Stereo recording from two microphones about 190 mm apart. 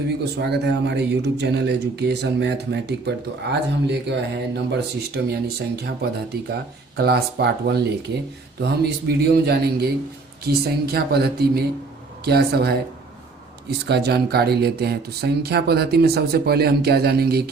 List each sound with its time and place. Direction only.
0.3 s speech: 60° right (ahead or behind)